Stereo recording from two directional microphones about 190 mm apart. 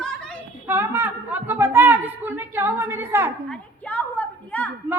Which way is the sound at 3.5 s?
5° left (ahead or behind).